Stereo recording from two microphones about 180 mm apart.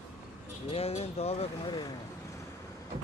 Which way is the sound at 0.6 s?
35° left (ahead or behind).